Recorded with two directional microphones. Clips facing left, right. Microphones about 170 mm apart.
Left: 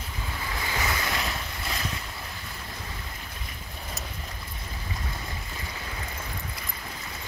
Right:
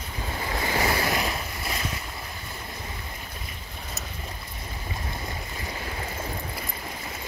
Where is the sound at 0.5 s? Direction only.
35° right (ahead or behind).